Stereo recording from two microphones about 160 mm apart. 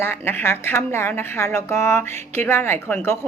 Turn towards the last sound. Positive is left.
turn(degrees=15)  # may be behind; listen again after turning